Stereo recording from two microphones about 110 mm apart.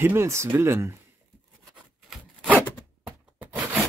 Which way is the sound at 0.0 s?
25° right (ahead or behind).